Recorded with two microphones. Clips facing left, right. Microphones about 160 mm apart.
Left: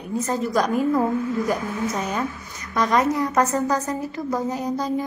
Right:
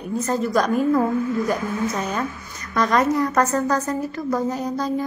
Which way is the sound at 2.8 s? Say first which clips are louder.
Right 1 dB; 15° left (ahead or behind).